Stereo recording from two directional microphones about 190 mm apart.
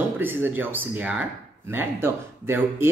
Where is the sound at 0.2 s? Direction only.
10° right (ahead or behind).